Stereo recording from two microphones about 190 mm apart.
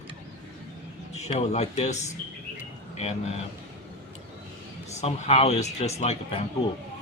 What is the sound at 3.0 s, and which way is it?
Speech, 35° left (ahead or behind).